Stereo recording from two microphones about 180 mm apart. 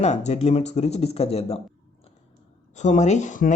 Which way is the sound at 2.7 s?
40° left (ahead or behind).